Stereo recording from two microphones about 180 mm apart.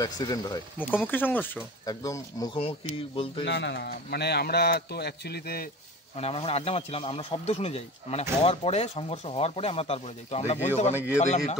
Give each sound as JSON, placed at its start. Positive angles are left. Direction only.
{"t": 0.0, "sound": "speech", "side_deg": 20}
{"t": 1.0, "sound": "speech", "side_deg": 10}
{"t": 2.5, "sound": "speech", "side_deg": 30}
{"t": 3.4, "sound": "a man's voice", "side_deg": 75}
{"t": 6.1, "sound": "speech", "side_deg": 35}